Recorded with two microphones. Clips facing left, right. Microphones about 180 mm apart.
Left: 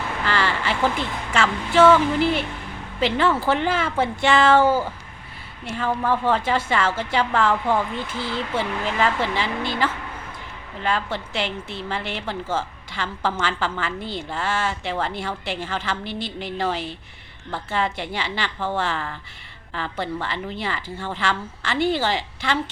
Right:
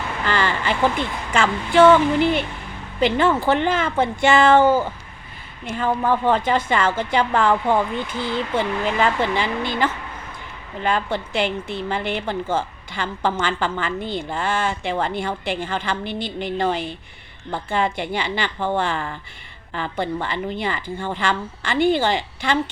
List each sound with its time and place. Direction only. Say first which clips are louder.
0.3 s a woman's voice: right 2 dB; 5° left (ahead or behind)
5.6 s a woman's voice: right 2 dB; 5° right (ahead or behind)
11.3 s a woman's voice: right 6 dB; 50° right (ahead or behind)
11.8 s a woman's voice: right 4 dB; centre (ahead or behind)